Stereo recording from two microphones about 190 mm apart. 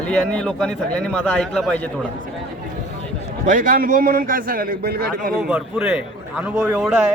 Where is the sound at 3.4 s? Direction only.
45° right (ahead or behind).